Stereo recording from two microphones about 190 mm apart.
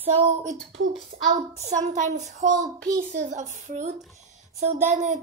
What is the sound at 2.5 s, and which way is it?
Speech, 20° right (ahead or behind).